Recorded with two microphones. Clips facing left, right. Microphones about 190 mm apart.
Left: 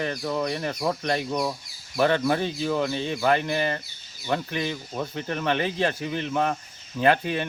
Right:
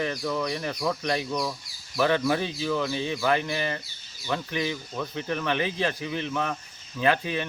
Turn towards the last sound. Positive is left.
turn(degrees=45)  # may be behind; listen again after turning